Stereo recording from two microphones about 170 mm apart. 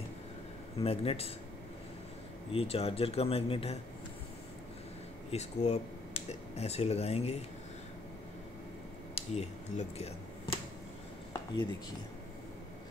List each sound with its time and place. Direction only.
0.7 s speech: 35° left (ahead or behind)
2.5 s speech: 35° left (ahead or behind)
5.3 s speech: 40° left (ahead or behind)
9.1 s a sound: 40° left (ahead or behind)